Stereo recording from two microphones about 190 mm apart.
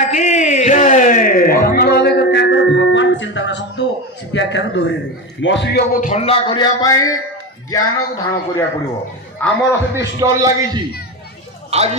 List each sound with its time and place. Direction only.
0.0 s a sound: 40° left (ahead or behind); by 4.9 s 70° left (ahead or behind)
5.4 s speech: 70° left (ahead or behind)
5.9 s speech: 45° left (ahead or behind)
6.2 s a man's voice: 30° left (ahead or behind); by 9.6 s 10° left (ahead or behind)
9.9 s a man's voice: 15° right (ahead or behind)
11.7 s a man's voice: 35° right (ahead or behind)